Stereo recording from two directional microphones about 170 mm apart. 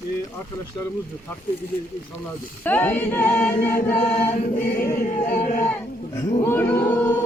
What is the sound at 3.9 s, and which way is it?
Choir, 35° left (ahead or behind).